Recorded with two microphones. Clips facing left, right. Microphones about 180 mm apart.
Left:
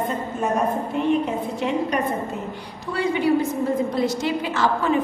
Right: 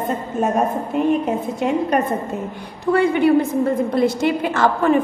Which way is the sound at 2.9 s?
60° right (ahead or behind).